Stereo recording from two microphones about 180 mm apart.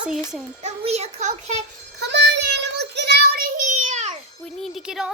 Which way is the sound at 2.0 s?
75° right (ahead or behind).